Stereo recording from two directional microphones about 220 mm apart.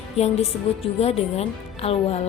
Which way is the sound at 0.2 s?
30° left (ahead or behind).